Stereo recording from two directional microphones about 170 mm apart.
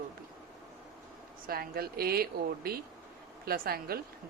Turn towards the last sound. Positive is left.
turn(degrees=-65)  # may be behind; listen again after turning